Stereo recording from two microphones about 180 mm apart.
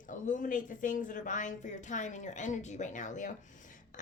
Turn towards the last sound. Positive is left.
turn(degrees=45)  # may be behind; listen again after turning